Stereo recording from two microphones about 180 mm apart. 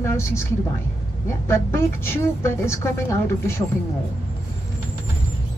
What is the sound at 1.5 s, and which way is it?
A woman's voice, 15° left (ahead or behind).